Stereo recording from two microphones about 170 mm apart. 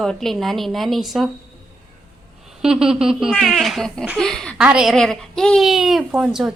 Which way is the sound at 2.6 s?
5° right (ahead or behind).